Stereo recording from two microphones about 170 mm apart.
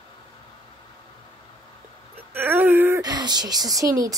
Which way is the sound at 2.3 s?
10° right (ahead or behind).